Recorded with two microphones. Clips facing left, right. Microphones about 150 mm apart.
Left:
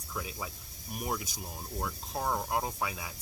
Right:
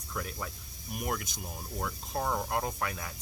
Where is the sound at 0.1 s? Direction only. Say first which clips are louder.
Right 1 dB; 10° left (ahead or behind).